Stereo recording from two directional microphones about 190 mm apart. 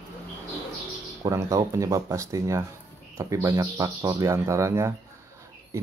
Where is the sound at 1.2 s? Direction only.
15° right (ahead or behind).